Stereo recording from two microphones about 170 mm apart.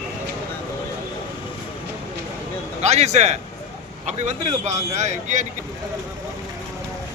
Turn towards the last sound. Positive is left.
turn(degrees=-45)  # may be behind; listen again after turning